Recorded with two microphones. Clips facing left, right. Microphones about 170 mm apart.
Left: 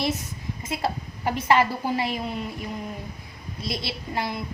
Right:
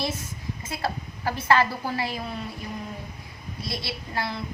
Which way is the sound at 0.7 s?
20° left (ahead or behind).